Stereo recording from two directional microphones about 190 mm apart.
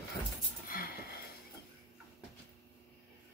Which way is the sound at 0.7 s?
50° left (ahead or behind).